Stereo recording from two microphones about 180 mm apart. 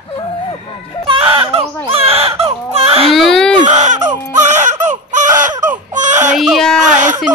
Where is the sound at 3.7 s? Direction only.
40° right (ahead or behind).